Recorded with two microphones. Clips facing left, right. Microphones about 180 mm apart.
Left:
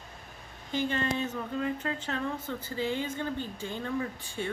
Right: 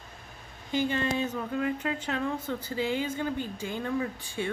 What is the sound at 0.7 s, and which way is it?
Speech, 15° right (ahead or behind).